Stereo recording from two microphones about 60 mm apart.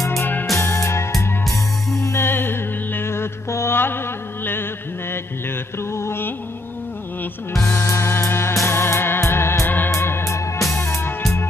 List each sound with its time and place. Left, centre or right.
0.2 s music: left
0.6 s music: left
2.2 s music: left
5.9 s music: left
7.6 s music: left
10.8 s music: left